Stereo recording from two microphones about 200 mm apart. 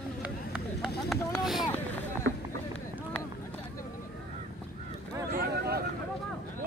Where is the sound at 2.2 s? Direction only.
60° right (ahead or behind).